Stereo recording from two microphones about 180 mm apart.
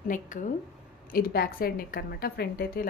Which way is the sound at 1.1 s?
55° left (ahead or behind).